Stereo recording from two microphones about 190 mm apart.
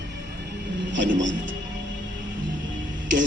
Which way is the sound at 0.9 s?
75° right (ahead or behind).